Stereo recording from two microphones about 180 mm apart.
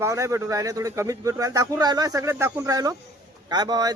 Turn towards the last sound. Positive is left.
turn(degrees=-20)  # may be behind; listen again after turning